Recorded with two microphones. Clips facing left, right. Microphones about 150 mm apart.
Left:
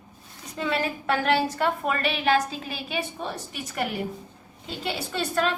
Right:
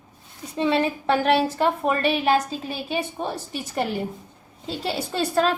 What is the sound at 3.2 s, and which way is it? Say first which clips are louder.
A woman's voice: right 4 dB; 30° right (ahead or behind).